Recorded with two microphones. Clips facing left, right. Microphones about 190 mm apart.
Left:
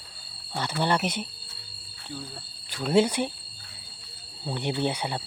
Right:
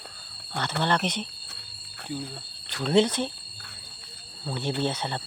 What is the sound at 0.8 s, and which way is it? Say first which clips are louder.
Speech: left 1 dB; 10° left (ahead or behind).